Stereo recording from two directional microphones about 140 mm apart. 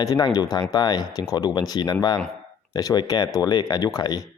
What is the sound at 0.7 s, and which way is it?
Speech, 30° left (ahead or behind).